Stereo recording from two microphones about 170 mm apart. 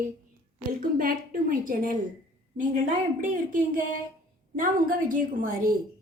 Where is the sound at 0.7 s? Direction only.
55° right (ahead or behind).